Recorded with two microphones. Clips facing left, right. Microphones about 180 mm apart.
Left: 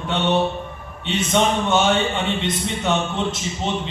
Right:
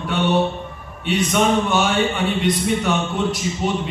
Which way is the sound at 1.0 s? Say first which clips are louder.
Right 1 dB; 25° left (ahead or behind).